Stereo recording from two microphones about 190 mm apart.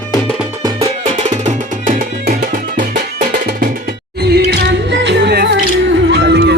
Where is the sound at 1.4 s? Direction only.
45° right (ahead or behind).